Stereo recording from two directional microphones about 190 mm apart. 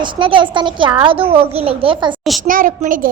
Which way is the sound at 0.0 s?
25° right (ahead or behind).